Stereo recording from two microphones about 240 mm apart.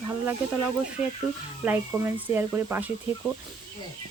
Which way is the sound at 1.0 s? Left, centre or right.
Left.